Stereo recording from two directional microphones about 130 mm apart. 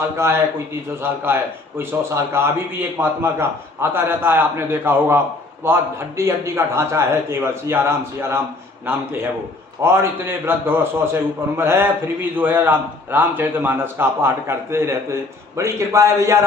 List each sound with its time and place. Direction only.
0.2 s a man's voice: 20° right (ahead or behind)